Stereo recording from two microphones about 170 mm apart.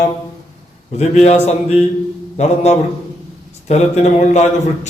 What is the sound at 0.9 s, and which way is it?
Speech, 40° left (ahead or behind).